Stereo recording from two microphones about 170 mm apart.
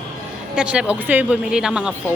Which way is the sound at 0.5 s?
5° right (ahead or behind).